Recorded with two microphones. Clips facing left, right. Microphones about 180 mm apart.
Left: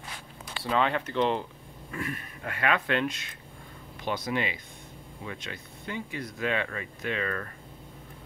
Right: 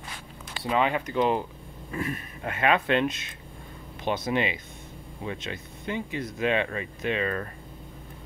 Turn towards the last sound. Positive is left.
turn(degrees=-20)  # may be behind; listen again after turning